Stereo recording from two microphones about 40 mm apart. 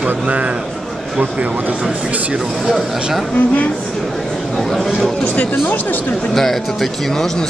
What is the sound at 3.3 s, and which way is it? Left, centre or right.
Speech, left.